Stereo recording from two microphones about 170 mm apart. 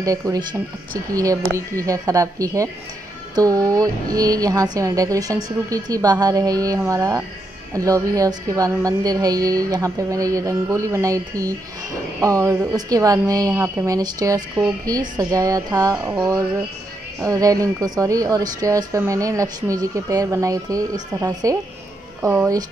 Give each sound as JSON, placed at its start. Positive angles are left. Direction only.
{"t": 0.0, "sound": "speech", "side_deg": -20}